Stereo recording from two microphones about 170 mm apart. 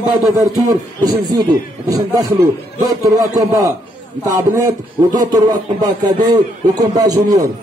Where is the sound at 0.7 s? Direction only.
20° right (ahead or behind).